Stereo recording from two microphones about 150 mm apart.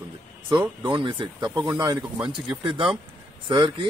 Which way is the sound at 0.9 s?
30° right (ahead or behind).